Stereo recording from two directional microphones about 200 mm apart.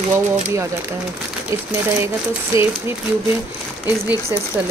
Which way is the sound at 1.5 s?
15° right (ahead or behind).